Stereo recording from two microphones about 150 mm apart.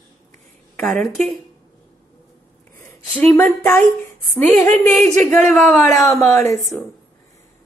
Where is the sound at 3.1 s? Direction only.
10° left (ahead or behind).